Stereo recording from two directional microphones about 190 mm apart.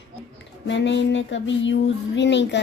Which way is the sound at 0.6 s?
70° left (ahead or behind).